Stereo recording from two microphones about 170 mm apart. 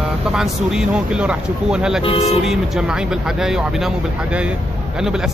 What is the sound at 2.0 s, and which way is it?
Speech, 30° left (ahead or behind).